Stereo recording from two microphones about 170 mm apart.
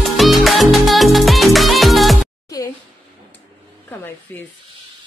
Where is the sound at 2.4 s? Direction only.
20° left (ahead or behind).